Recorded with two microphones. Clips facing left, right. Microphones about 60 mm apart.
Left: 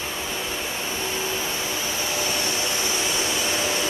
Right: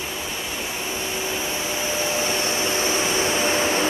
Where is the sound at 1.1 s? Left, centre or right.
Right.